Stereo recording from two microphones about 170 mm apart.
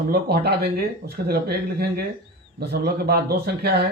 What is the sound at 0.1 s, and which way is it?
Speech, 70° right (ahead or behind).